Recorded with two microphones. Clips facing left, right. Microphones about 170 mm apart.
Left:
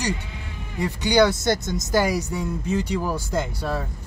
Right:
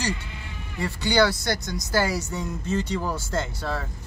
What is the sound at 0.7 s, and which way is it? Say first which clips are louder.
Speech: left 3 dB; 15° left (ahead or behind).